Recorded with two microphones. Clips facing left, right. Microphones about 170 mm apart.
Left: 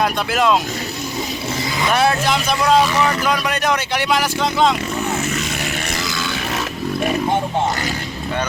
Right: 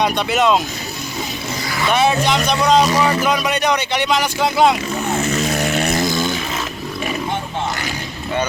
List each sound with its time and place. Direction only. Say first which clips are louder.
0.0 s speech: right 1 dB; centre (ahead or behind)
1.9 s speech: right 2 dB; centre (ahead or behind)
4.4 s speech: right 4 dB; 10° right (ahead or behind)
5.8 s a sound: right 7 dB; 50° right (ahead or behind)